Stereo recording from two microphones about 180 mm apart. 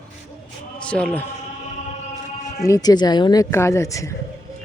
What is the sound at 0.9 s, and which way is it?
Speech, 5° left (ahead or behind).